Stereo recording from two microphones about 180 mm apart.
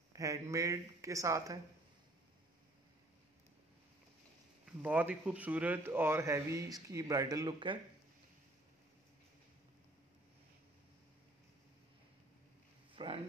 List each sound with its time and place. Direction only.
0.1 s speech: 15° right (ahead or behind)
4.8 s speech: 10° right (ahead or behind); by 7.8 s 25° right (ahead or behind)
12.9 s a sound: 30° right (ahead or behind)